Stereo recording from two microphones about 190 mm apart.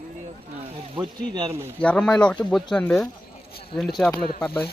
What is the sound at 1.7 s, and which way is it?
Speech, 5° left (ahead or behind).